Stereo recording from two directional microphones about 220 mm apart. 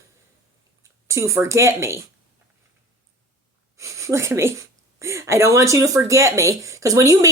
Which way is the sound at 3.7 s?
15° right (ahead or behind).